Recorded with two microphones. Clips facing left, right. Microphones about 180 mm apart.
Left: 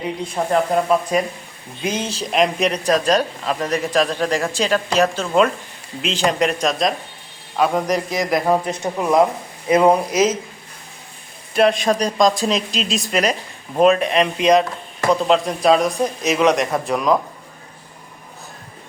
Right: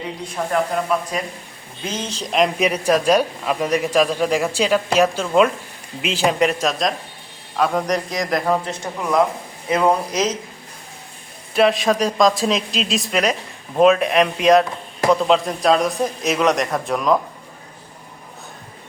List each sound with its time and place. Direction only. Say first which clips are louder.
0.4 s a man's voice: left 3 dB; 25° left (ahead or behind)
1.8 s a man's voice: left 4 dB; 10° left (ahead or behind)
8.4 s a man's voice: left 3 dB; 15° left (ahead or behind)
11.5 s a man's voice: even; centre (ahead or behind)